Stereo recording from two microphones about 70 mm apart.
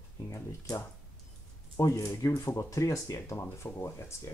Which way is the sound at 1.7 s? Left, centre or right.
Left.